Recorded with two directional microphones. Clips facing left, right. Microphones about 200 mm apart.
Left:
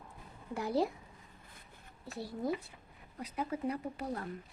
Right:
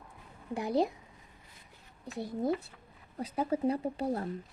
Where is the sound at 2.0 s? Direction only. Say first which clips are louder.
Right 4 dB; 20° right (ahead or behind).